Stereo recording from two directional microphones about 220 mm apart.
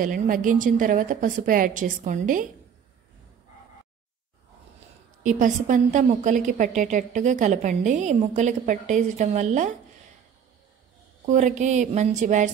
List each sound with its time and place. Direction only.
0.0 s a woman's voice: 40° right (ahead or behind)
5.4 s a woman's voice: 35° right (ahead or behind)
11.2 s a woman's voice: 35° right (ahead or behind)